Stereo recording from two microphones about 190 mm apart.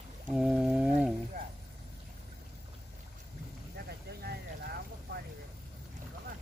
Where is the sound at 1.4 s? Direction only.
50° right (ahead or behind).